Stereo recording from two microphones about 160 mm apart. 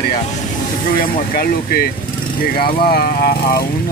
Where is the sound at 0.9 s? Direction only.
65° left (ahead or behind).